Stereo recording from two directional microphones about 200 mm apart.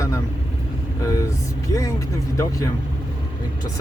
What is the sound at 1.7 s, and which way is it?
Speech, 15° left (ahead or behind).